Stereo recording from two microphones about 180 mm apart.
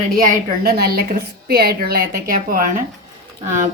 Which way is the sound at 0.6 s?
60° right (ahead or behind).